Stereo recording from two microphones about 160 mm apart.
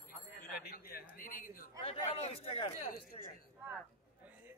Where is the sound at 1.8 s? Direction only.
35° left (ahead or behind).